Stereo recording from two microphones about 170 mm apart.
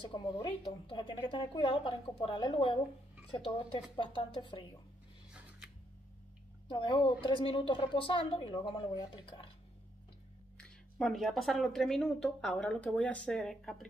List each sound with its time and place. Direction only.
0.0 s a woman's voice: 25° left (ahead or behind)
6.7 s a woman's voice: 30° left (ahead or behind)
10.6 s speech: centre (ahead or behind)